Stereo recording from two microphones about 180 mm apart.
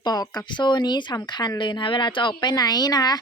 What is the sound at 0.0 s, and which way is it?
A woman's voice, 20° left (ahead or behind).